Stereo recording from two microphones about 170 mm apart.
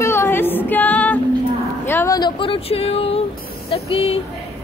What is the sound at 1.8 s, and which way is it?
Speech, 15° left (ahead or behind).